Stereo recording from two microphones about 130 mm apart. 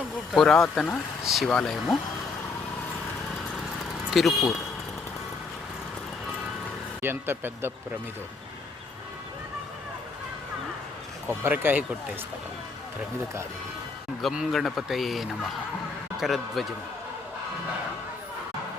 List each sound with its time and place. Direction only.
0.3 s speech: 5° left (ahead or behind)
4.1 s speech: centre (ahead or behind)
7.0 s speech: 15° right (ahead or behind)
11.3 s speech: 15° right (ahead or behind)
14.2 s speech: centre (ahead or behind)